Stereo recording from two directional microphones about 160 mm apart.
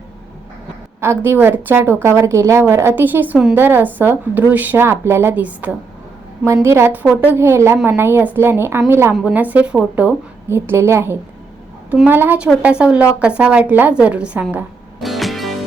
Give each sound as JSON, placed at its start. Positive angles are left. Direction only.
{"t": 1.2, "sound": "a woman's voice", "side_deg": -15}
{"t": 15.0, "sound": "music", "side_deg": 0}